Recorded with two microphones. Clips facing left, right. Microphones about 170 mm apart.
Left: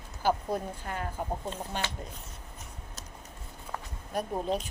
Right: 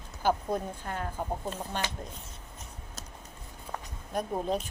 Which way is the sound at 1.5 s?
15° right (ahead or behind).